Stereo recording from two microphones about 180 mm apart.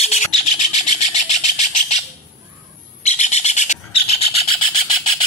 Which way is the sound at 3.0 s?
40° left (ahead or behind).